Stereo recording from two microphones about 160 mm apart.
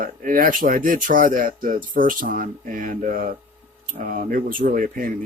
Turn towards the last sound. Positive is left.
turn(degrees=-60)  # may be behind; listen again after turning